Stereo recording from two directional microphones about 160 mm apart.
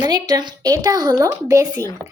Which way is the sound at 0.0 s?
25° right (ahead or behind).